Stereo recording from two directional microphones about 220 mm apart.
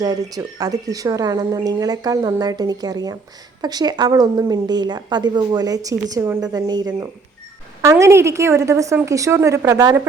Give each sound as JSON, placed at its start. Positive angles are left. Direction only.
{"t": 0.0, "sound": "a woman's voice", "side_deg": -15}